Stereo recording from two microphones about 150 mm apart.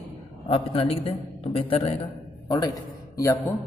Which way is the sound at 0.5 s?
40° left (ahead or behind).